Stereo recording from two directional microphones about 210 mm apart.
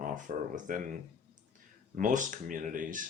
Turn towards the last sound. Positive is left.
turn(degrees=-40)  # may be behind; listen again after turning